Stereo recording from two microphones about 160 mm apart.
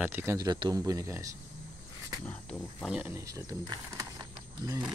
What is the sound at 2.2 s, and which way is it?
Speech, 10° left (ahead or behind).